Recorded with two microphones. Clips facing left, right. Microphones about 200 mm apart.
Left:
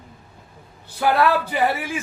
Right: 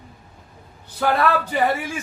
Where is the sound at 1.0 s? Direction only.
5° left (ahead or behind).